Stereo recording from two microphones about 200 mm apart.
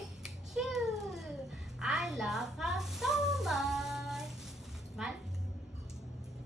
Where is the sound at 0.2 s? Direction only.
Centre (ahead or behind).